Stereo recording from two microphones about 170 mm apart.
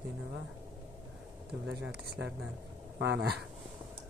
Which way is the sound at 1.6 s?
80° right.